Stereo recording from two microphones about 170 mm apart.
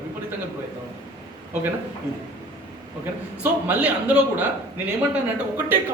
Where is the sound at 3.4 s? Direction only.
10° right (ahead or behind).